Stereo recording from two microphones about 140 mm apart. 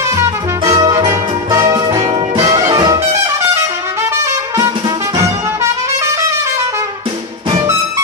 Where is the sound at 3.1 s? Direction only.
20° right (ahead or behind).